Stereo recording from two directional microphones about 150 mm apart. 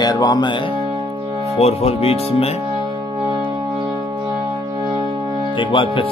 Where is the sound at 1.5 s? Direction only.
45° left (ahead or behind).